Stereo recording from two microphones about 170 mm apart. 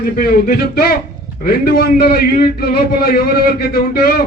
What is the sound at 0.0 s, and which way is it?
A man's voice, 65° left (ahead or behind).